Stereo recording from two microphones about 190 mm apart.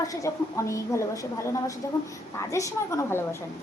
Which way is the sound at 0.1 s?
15° left (ahead or behind).